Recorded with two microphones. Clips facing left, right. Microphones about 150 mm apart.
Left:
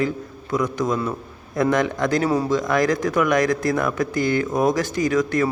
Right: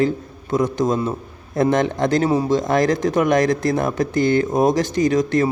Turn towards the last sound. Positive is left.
turn(degrees=-25)  # may be behind; listen again after turning